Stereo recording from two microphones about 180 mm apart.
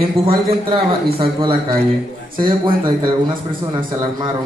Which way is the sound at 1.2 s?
30° right (ahead or behind).